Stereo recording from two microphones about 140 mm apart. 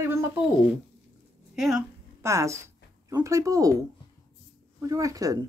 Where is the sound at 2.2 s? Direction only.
20° right (ahead or behind).